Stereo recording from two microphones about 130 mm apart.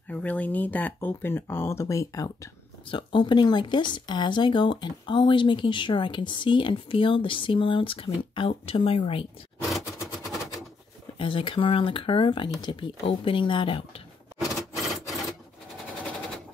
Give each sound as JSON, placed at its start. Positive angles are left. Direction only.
{"t": 0.1, "sound": "speech", "side_deg": 10}
{"t": 2.9, "sound": "speech", "side_deg": 40}
{"t": 9.6, "sound": "vehicle", "side_deg": 0}
{"t": 10.1, "sound": "gunshot", "side_deg": 0}
{"t": 11.1, "sound": "speech", "side_deg": 40}
{"t": 14.4, "sound": "a sound", "side_deg": 0}